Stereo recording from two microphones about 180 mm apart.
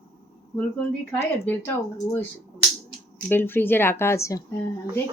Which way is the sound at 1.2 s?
15° left (ahead or behind).